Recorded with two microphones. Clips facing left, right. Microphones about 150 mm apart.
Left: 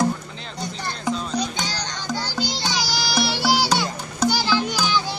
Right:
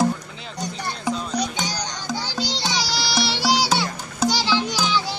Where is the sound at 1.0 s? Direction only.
10° right (ahead or behind).